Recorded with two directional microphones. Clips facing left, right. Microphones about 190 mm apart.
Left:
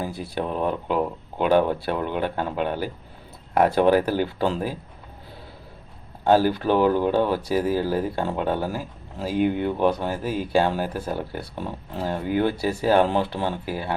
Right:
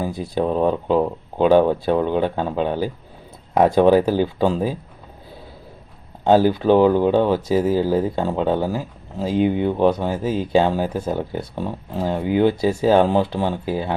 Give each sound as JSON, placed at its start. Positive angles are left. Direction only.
{"t": 0.0, "sound": "speech", "side_deg": -15}
{"t": 0.4, "sound": "speech", "side_deg": -30}
{"t": 6.2, "sound": "speech", "side_deg": -15}